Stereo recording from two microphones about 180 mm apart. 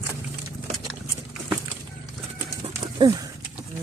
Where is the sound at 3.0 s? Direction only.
25° right (ahead or behind).